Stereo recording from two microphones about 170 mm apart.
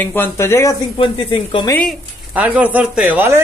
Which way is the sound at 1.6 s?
10° left (ahead or behind).